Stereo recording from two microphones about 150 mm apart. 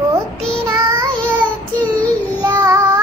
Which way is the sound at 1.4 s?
10° left (ahead or behind).